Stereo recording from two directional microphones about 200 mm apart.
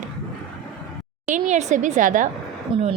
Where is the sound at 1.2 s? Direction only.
40° right (ahead or behind).